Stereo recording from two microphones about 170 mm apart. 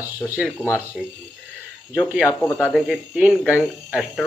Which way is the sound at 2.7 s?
5° right (ahead or behind).